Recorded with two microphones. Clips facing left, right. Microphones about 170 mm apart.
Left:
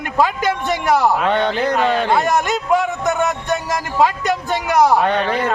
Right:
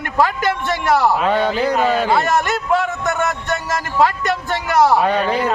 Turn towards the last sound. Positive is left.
turn(degrees=-5)  # may be behind; listen again after turning